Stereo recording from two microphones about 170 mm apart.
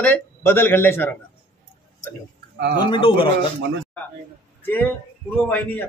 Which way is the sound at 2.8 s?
30° left (ahead or behind).